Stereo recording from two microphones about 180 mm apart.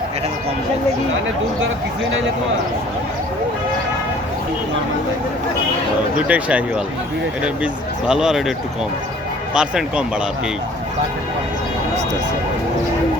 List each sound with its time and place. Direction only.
6.1 s speech: 5° right (ahead or behind)
9.6 s speech: 5° right (ahead or behind)